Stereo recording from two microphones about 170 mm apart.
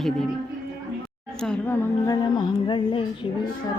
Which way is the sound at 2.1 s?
25° left (ahead or behind).